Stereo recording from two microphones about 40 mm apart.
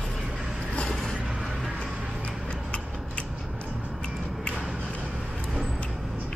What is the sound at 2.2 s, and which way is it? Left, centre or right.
Tick-tock, left.